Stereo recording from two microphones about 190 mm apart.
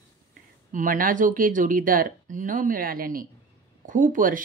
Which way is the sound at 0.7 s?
45° right (ahead or behind).